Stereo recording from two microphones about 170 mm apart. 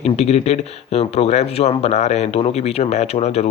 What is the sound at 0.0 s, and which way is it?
Speech, 40° left (ahead or behind).